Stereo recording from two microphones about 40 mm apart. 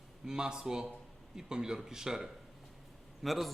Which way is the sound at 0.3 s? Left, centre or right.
Centre.